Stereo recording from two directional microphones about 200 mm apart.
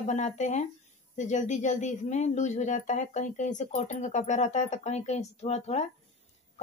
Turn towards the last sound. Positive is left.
turn(degrees=35)  # may be behind; listen again after turning